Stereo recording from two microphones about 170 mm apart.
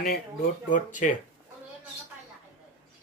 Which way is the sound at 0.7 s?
50° left (ahead or behind).